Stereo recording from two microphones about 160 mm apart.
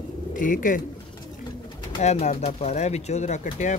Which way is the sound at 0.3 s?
55° left (ahead or behind).